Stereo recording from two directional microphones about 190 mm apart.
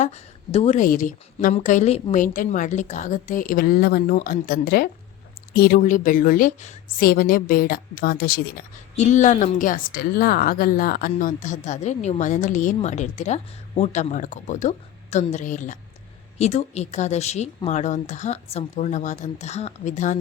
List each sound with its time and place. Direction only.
0.0 s a woman's voice: 35° left (ahead or behind); by 8.6 s 55° left (ahead or behind)
9.0 s a woman's voice: 40° left (ahead or behind)